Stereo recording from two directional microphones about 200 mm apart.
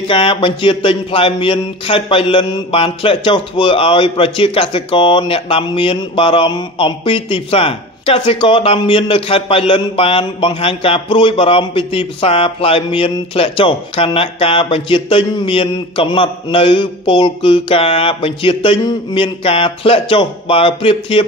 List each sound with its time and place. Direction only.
0.1 s speech: 25° left (ahead or behind)